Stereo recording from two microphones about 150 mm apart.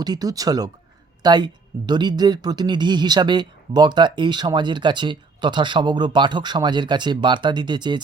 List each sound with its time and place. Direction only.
0.0 s speech: 25° right (ahead or behind)